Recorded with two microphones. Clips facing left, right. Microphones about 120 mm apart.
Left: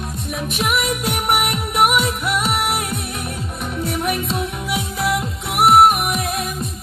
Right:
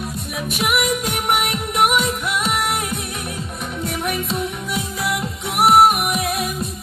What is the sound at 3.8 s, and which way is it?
Music, centre (ahead or behind).